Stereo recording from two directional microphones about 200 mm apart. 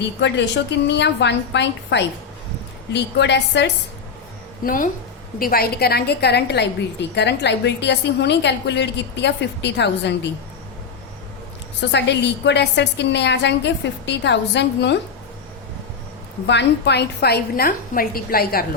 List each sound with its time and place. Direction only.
0.0 s a woman's voice: 60° left (ahead or behind)
4.6 s a woman's voice: 45° left (ahead or behind); by 10.2 s 60° left (ahead or behind)
11.8 s a woman's voice: 60° left (ahead or behind)
16.5 s a woman's voice: 60° left (ahead or behind)